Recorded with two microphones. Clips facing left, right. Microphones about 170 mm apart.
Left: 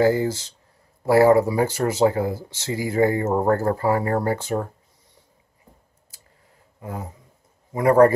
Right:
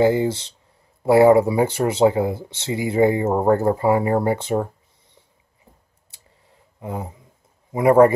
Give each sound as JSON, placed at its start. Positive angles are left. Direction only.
{"t": 0.0, "sound": "speech", "side_deg": -25}
{"t": 6.8, "sound": "a sound", "side_deg": -20}
{"t": 7.7, "sound": "a man's voice", "side_deg": -20}